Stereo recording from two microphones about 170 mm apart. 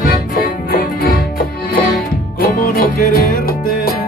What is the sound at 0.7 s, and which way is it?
Music, 60° left (ahead or behind).